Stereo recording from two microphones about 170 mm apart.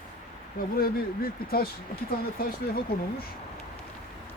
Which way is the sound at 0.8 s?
60° left (ahead or behind).